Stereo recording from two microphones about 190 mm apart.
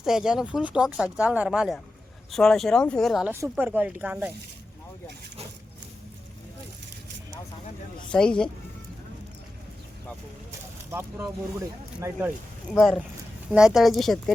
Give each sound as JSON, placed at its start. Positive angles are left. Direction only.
{"t": 0.0, "sound": "speech", "side_deg": 0}
{"t": 8.1, "sound": "speech", "side_deg": 5}
{"t": 11.6, "sound": "speech", "side_deg": -15}
{"t": 12.7, "sound": "speech", "side_deg": 0}